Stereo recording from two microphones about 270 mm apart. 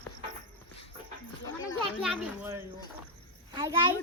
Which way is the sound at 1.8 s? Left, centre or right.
Centre.